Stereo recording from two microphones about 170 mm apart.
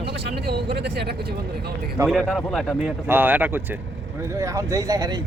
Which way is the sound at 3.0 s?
10° right (ahead or behind).